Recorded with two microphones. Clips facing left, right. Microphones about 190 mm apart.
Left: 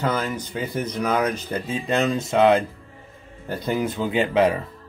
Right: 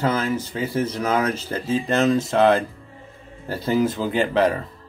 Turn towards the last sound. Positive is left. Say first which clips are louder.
# even
turn(degrees=0)  # may be behind; listen again after turning